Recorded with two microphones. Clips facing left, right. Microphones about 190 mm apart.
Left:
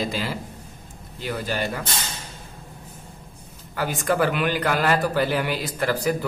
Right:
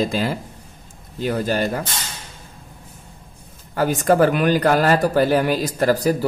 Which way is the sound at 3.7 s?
45° right (ahead or behind).